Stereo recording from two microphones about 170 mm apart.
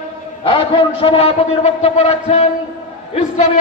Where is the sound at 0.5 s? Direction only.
30° left (ahead or behind).